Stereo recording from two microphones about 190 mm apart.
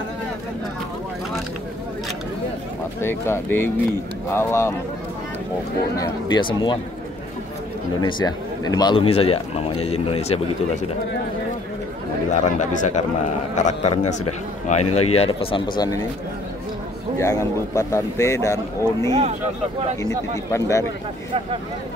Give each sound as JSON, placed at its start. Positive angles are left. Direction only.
{"t": 3.0, "sound": "a man's voice", "side_deg": 15}
{"t": 5.9, "sound": "speech", "side_deg": 20}
{"t": 8.0, "sound": "speech", "side_deg": 20}
{"t": 12.4, "sound": "speech", "side_deg": 40}
{"t": 17.2, "sound": "a man's voice", "side_deg": 15}
{"t": 19.0, "sound": "speech", "side_deg": -30}
{"t": 20.5, "sound": "a man's voice", "side_deg": 15}